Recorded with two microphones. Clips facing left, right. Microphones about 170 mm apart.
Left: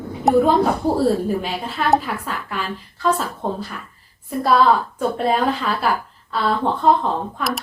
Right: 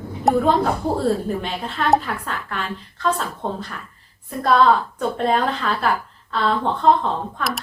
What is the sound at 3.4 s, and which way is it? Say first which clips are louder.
A woman's voice: left 2 dB; 5° left (ahead or behind).